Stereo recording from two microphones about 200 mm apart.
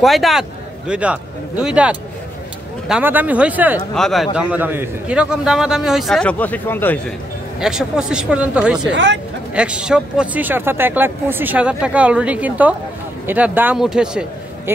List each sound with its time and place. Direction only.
0.0 s a man's voice: centre (ahead or behind)
7.6 s a man's voice: 5° right (ahead or behind)
8.9 s speech: 65° right (ahead or behind)
9.6 s a man's voice: 5° right (ahead or behind)